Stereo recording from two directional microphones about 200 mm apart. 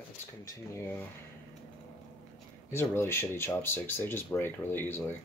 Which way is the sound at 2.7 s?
10° left (ahead or behind).